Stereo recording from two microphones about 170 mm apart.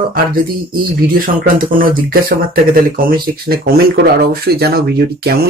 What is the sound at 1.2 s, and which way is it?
Speech, 55° right (ahead or behind).